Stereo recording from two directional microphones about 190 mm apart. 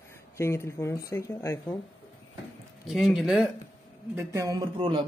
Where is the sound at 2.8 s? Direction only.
Centre (ahead or behind).